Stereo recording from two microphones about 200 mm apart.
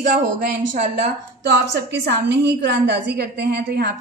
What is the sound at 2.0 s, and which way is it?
A woman's voice, 60° right (ahead or behind).